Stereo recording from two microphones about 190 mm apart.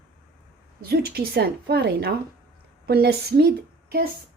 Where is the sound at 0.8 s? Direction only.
55° right (ahead or behind).